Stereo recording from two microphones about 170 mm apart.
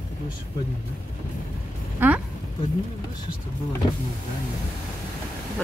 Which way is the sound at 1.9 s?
10° right (ahead or behind).